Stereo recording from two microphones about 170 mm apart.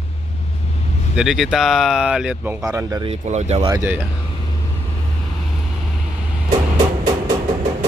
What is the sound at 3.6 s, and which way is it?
Speech, 15° right (ahead or behind).